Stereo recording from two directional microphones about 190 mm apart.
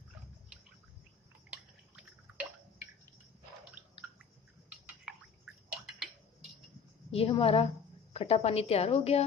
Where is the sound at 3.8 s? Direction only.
10° right (ahead or behind).